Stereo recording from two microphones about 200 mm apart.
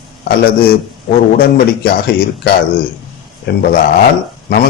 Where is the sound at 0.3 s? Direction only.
50° left (ahead or behind).